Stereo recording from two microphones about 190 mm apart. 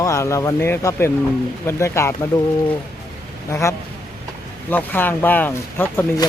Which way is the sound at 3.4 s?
15° left (ahead or behind).